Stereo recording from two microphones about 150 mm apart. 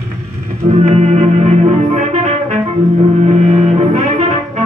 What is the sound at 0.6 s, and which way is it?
Music, 50° right (ahead or behind).